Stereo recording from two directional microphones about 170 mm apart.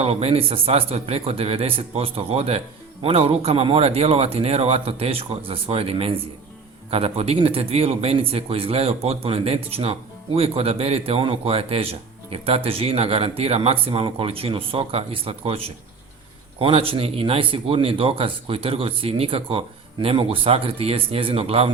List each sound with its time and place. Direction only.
0.0 s a man's voice: 35° right (ahead or behind)